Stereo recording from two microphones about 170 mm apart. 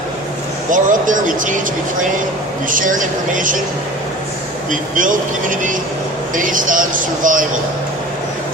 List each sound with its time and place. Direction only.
0.7 s speech: 50° right (ahead or behind)
2.6 s speech: 50° right (ahead or behind)
4.7 s speech: 50° right (ahead or behind)